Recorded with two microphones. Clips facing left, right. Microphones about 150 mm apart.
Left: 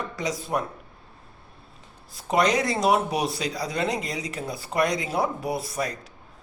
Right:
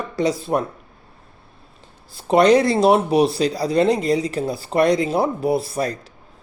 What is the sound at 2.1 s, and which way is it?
Speech, 30° right (ahead or behind).